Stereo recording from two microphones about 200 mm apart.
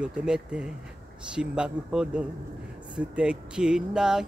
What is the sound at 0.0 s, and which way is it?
Speech, 5° right (ahead or behind).